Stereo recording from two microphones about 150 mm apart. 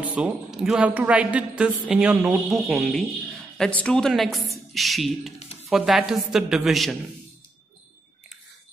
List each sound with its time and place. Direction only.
0.0 s a woman's voice: 10° right (ahead or behind)